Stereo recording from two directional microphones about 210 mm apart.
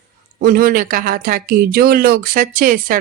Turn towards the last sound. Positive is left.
turn(degrees=-40)  # may be behind; listen again after turning